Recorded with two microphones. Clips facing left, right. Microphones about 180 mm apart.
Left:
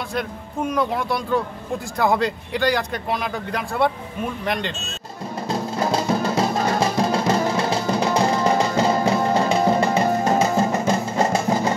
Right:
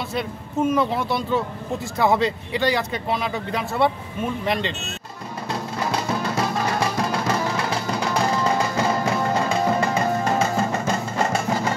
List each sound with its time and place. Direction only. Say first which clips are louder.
0.1 s speech: right 1 dB; 5° right (ahead or behind)
6.2 s music: left 3 dB; 30° left (ahead or behind)